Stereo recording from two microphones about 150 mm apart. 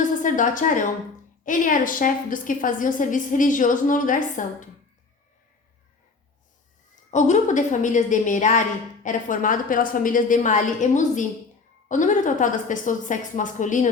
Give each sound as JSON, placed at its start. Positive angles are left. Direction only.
{"t": 0.2, "sound": "a woman's voice", "side_deg": 60}
{"t": 7.1, "sound": "a woman's voice", "side_deg": 55}